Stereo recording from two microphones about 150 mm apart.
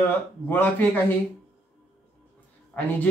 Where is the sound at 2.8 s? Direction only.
10° left (ahead or behind).